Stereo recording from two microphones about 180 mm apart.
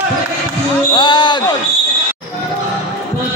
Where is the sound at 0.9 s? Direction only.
25° left (ahead or behind).